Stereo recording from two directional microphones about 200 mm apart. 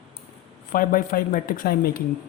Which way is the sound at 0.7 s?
45° left (ahead or behind).